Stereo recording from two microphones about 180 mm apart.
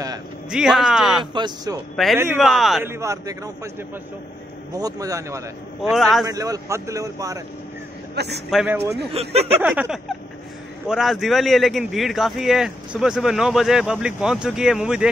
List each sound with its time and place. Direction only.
0.5 s a man's voice: centre (ahead or behind)
1.3 s a man's voice: 25° right (ahead or behind)
2.0 s a man's voice: centre (ahead or behind)
2.8 s a man's voice: 15° right (ahead or behind)
4.7 s a man's voice: 20° right (ahead or behind)
5.8 s a man's voice: centre (ahead or behind)
6.2 s a man's voice: 20° right (ahead or behind)
8.5 s a man's voice: centre (ahead or behind)
9.1 s speech: 35° right (ahead or behind)
9.6 s a man's voice: 5° right (ahead or behind)